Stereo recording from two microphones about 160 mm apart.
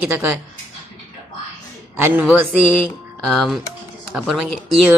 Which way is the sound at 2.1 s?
5° right (ahead or behind).